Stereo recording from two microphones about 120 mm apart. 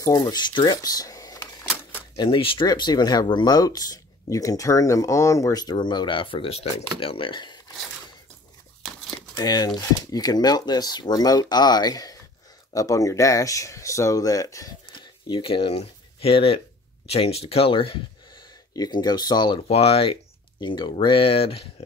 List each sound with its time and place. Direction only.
0.0 s speech: 30° left (ahead or behind)
2.1 s speech: 45° left (ahead or behind)
9.3 s speech: 35° left (ahead or behind)
14.9 s speech: 40° left (ahead or behind)
18.7 s speech: 35° left (ahead or behind)
19.7 s speech: 55° left (ahead or behind)
20.6 s speech: 40° left (ahead or behind)